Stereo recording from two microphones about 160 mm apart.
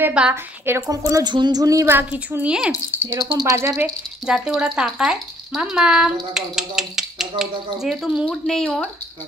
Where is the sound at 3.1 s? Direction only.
25° right (ahead or behind).